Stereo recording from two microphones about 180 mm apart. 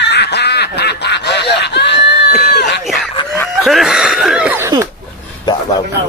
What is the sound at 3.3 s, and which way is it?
Snicker, centre (ahead or behind).